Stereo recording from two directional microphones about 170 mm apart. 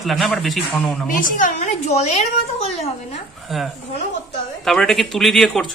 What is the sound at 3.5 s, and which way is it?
Speech, centre (ahead or behind).